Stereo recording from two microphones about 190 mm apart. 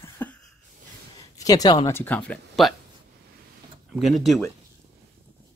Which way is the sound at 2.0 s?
10° left (ahead or behind).